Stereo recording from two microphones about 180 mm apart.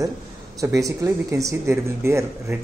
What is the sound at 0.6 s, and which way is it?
Speech, 20° right (ahead or behind).